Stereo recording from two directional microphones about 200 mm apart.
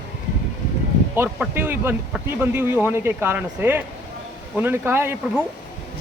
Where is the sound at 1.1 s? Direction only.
10° right (ahead or behind).